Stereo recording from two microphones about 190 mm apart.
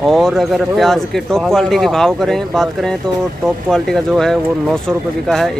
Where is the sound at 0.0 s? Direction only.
Centre (ahead or behind).